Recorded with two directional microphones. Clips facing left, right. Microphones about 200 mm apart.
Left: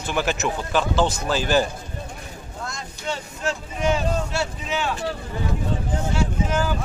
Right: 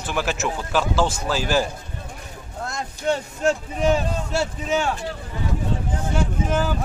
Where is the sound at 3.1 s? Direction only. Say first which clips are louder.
Right 7 dB; 50° right (ahead or behind).